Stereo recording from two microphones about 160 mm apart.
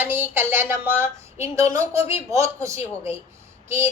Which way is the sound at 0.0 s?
10° right (ahead or behind).